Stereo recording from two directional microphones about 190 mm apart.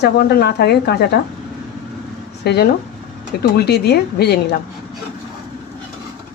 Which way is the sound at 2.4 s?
60° left (ahead or behind).